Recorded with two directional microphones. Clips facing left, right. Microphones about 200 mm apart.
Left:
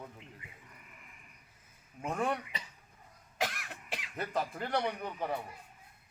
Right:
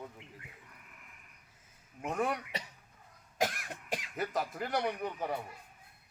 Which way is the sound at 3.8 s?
45° right (ahead or behind).